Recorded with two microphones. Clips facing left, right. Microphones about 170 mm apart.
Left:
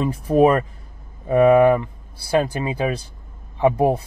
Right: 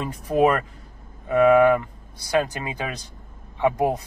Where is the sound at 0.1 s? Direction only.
35° left (ahead or behind).